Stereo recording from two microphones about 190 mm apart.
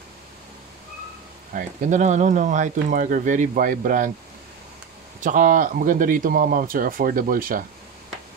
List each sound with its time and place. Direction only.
1.5 s speech: 40° right (ahead or behind)
5.2 s speech: 45° right (ahead or behind)